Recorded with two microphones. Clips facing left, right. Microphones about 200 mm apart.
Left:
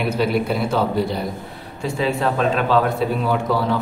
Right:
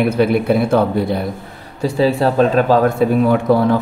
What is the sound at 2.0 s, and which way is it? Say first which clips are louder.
A man's voice: right 6 dB; 40° right (ahead or behind).